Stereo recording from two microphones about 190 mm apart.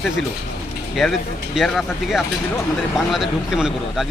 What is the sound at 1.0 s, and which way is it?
A man's voice, centre (ahead or behind).